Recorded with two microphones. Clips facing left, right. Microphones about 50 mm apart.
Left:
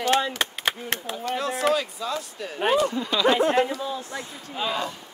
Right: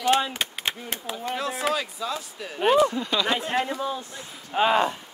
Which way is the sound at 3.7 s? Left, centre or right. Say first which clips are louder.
Right 1 dB; right.